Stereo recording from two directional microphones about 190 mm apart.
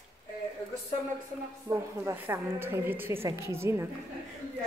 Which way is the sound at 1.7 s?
15° right (ahead or behind).